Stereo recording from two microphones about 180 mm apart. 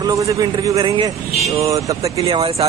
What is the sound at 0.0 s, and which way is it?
A man's voice, 20° right (ahead or behind).